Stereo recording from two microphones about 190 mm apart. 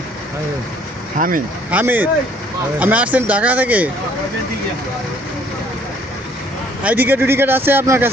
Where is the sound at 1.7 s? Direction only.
10° right (ahead or behind).